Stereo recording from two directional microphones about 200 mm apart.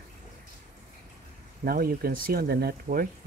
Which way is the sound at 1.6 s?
50° right (ahead or behind).